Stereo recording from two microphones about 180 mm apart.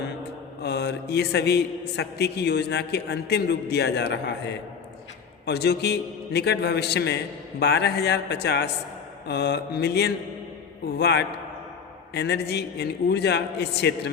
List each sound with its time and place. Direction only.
0.6 s a man's voice: 65° left (ahead or behind)
5.5 s a man's voice: 65° left (ahead or behind)